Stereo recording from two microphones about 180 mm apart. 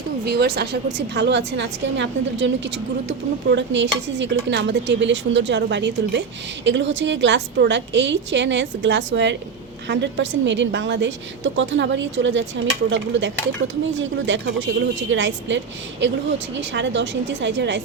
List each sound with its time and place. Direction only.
0.3 s a woman's voice: 65° right (ahead or behind)
6.7 s a woman's voice: 85° right